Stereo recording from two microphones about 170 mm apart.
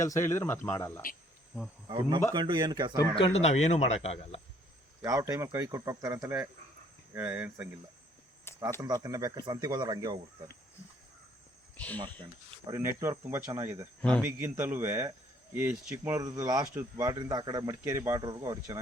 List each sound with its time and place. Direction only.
0.0 s speech: 15° left (ahead or behind)
1.9 s speech: 30° right (ahead or behind)
3.2 s speech: 35° left (ahead or behind)
5.0 s speech: 20° right (ahead or behind)
8.5 s a sound: 15° left (ahead or behind)
8.8 s speech: 20° right (ahead or behind)
12.6 s speech: 15° right (ahead or behind)